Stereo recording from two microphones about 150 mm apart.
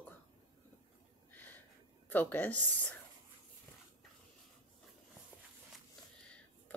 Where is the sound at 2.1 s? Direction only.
10° left (ahead or behind).